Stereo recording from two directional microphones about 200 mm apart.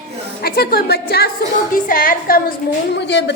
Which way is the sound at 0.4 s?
50° left (ahead or behind).